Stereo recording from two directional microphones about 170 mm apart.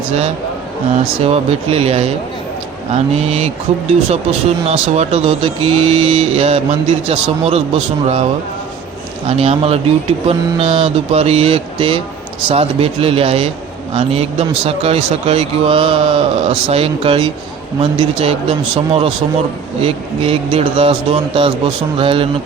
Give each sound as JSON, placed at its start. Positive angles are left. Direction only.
{"t": 1.2, "sound": "speech", "side_deg": -35}
{"t": 19.8, "sound": "speech", "side_deg": -35}